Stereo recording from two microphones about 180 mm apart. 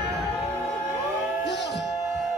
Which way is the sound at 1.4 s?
70° left (ahead or behind).